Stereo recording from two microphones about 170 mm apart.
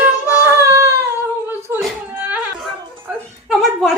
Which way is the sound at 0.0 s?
10° right (ahead or behind).